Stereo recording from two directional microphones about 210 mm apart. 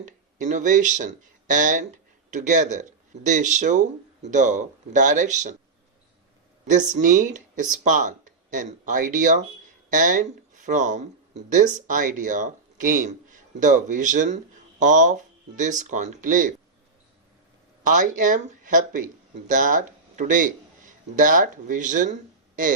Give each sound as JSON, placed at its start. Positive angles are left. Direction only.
{"t": 0.0, "sound": "speech", "side_deg": -35}
{"t": 6.7, "sound": "speech", "side_deg": -35}
{"t": 17.8, "sound": "speech", "side_deg": -40}